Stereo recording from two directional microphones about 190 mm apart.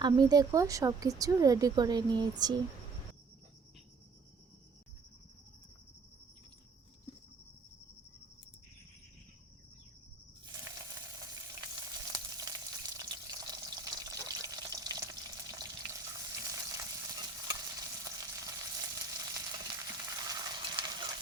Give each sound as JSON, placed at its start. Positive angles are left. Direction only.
{"t": 0.0, "sound": "speech", "side_deg": -20}
{"t": 12.1, "sound": "frying", "side_deg": -20}